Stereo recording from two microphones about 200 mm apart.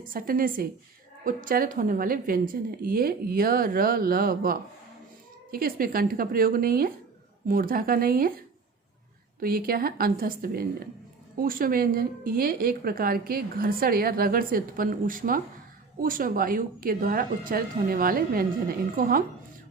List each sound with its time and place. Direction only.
0.0 s a woman's voice: 45° right (ahead or behind)
9.4 s a woman's voice: 45° right (ahead or behind)